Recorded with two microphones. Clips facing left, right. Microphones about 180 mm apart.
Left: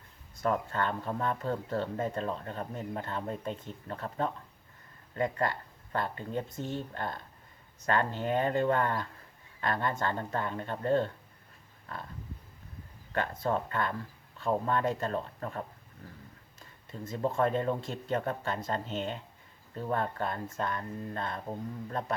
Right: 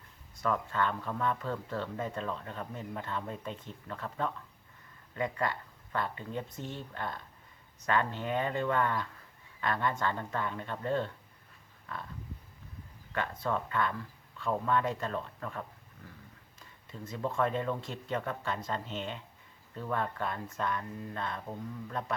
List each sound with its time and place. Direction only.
0.4 s speech: 40° left (ahead or behind)
13.1 s speech: 40° left (ahead or behind)
17.2 s speech: 35° left (ahead or behind)